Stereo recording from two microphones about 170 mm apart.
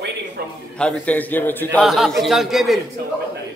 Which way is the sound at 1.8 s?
Centre (ahead or behind).